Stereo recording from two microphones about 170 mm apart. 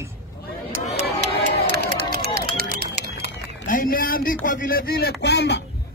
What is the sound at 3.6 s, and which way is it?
Speech, 55° left (ahead or behind).